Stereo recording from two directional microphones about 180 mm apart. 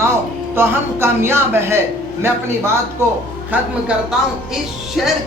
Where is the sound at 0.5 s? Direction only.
10° right (ahead or behind).